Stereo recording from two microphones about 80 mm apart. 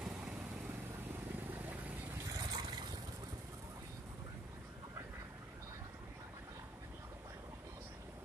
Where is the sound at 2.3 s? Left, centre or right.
Right.